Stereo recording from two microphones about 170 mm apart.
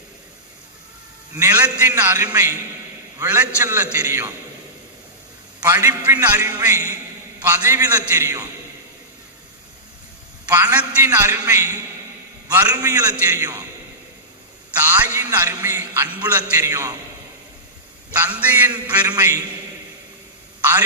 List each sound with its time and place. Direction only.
1.4 s music: 15° right (ahead or behind)
5.6 s music: 15° right (ahead or behind)
10.5 s music: 10° right (ahead or behind)
12.5 s a man's voice: 20° right (ahead or behind)
14.8 s music: 10° right (ahead or behind)
18.1 s music: 10° right (ahead or behind)